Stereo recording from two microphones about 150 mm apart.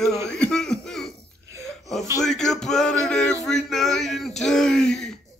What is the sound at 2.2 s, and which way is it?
Speech, 5° left (ahead or behind).